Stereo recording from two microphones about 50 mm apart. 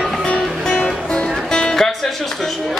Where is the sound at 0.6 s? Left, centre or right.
Centre.